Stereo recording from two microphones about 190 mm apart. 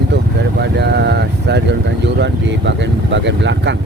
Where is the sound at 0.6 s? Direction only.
60° right (ahead or behind).